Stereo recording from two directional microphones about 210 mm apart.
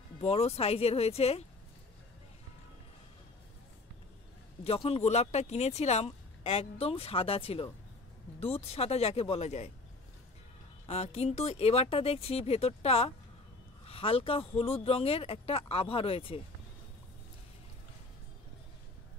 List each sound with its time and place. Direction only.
0.2 s speech: 30° left (ahead or behind)
4.6 s speech: 30° left (ahead or behind)
10.9 s speech: 30° left (ahead or behind)